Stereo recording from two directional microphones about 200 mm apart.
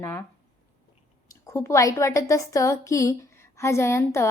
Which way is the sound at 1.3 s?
15° left (ahead or behind).